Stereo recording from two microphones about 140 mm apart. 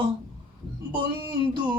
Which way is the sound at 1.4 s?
30° right (ahead or behind).